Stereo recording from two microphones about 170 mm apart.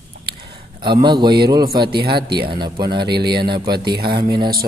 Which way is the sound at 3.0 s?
70° right (ahead or behind).